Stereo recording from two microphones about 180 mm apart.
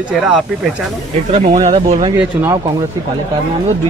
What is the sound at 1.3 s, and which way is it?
Speech, 40° right (ahead or behind).